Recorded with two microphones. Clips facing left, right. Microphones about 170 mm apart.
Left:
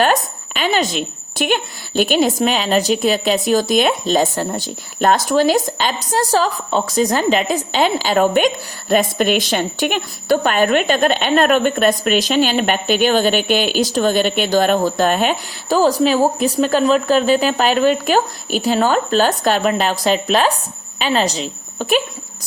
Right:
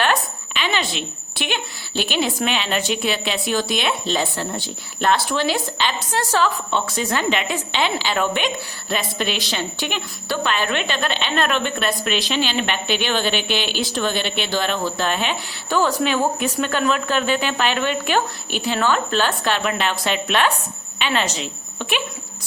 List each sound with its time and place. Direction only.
0.0 s a woman's voice: 45° left (ahead or behind)